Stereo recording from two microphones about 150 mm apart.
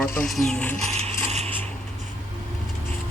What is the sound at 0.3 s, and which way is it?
Speech, centre (ahead or behind).